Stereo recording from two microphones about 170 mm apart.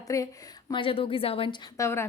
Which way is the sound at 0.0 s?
20° left (ahead or behind).